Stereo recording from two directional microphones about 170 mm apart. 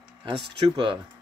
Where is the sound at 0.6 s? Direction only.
30° right (ahead or behind).